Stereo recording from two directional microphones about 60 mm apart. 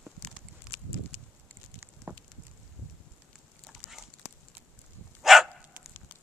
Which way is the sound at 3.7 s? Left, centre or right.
Centre.